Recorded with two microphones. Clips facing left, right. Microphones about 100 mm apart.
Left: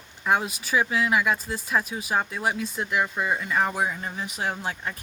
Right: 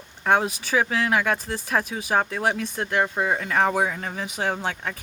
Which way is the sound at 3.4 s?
65° right (ahead or behind).